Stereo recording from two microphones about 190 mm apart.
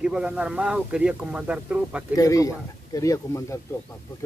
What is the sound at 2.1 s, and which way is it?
Speech, 15° left (ahead or behind).